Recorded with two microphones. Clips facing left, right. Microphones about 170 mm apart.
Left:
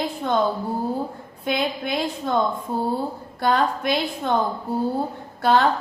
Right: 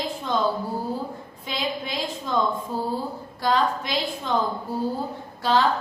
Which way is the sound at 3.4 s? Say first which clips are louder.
Left 2 dB; 55° left (ahead or behind).